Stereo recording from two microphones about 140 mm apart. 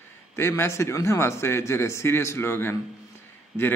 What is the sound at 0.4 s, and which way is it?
A man's voice, 20° left (ahead or behind).